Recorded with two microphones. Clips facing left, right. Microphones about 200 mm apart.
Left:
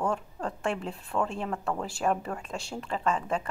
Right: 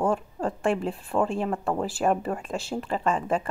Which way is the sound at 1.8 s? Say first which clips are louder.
Right 5 dB; 5° right (ahead or behind).